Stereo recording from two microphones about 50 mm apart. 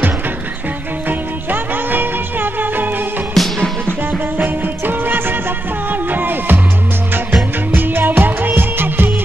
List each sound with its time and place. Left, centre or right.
1.0 s music: right
3.3 s music: centre
4.5 s music: right
7.7 s music: right